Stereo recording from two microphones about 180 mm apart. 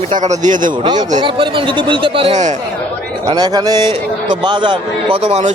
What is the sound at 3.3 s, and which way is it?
A man's voice, 20° right (ahead or behind).